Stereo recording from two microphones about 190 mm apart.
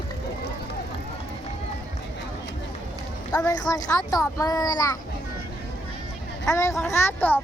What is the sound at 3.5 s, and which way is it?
A child's voice, 20° left (ahead or behind).